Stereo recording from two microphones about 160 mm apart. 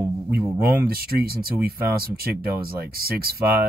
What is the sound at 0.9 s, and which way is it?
Speech, 70° right (ahead or behind).